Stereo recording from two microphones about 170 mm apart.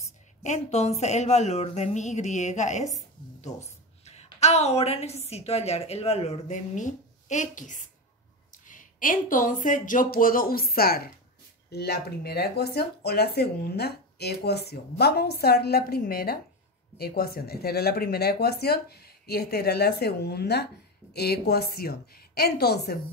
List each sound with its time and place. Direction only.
0.4 s a woman's voice: 40° left (ahead or behind); by 11.1 s 60° left (ahead or behind)
11.7 s speech: 75° left (ahead or behind)